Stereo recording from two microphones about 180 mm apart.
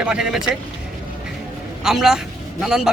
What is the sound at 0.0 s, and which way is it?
Speech, 5° right (ahead or behind).